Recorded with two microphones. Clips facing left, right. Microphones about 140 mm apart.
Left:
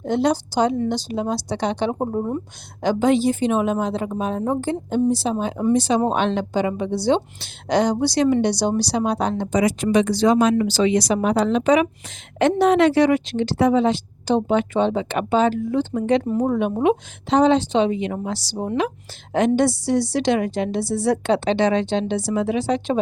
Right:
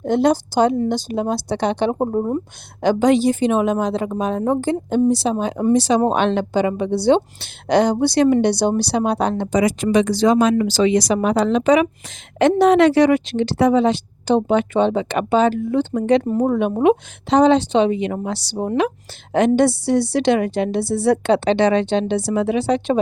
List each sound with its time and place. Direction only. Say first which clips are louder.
0.0 s speech: right 3 dB; 50° right (ahead or behind)
2.8 s speech: right 3 dB; 70° right (ahead or behind)
6.0 s a woman's voice: right 3 dB; 65° right (ahead or behind)
19.3 s a woman's voice: right 3 dB; 65° right (ahead or behind)